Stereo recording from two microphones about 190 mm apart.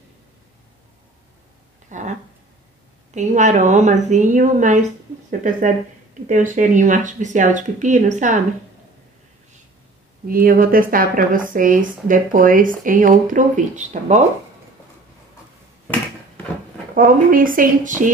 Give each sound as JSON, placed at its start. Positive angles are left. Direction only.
{"t": 1.9, "sound": "a sound", "side_deg": -40}
{"t": 3.2, "sound": "speech", "side_deg": -40}
{"t": 10.2, "sound": "speech", "side_deg": -50}
{"t": 16.9, "sound": "speech", "side_deg": -45}